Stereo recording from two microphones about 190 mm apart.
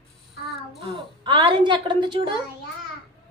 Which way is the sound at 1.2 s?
25° right (ahead or behind).